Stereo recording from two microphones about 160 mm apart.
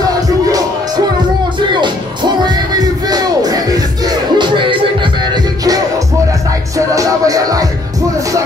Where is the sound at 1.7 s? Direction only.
30° right (ahead or behind).